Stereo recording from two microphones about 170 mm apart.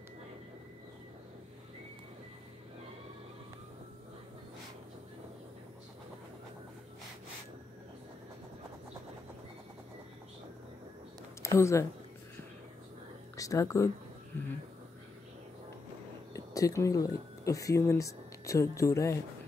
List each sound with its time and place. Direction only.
11.4 s speech: 15° left (ahead or behind)
13.4 s speech: 20° left (ahead or behind)
16.3 s speech: 20° left (ahead or behind)